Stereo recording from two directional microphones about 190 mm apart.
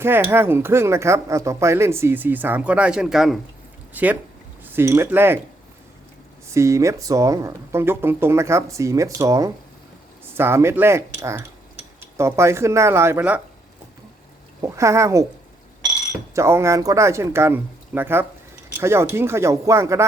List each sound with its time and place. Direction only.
0.0 s speech: 10° right (ahead or behind)
6.5 s speech: 15° right (ahead or behind)
14.6 s speech: 15° right (ahead or behind)
16.3 s speech: 15° right (ahead or behind)